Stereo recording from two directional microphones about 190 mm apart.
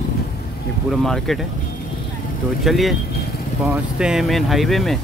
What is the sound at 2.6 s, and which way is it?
Speech, centre (ahead or behind).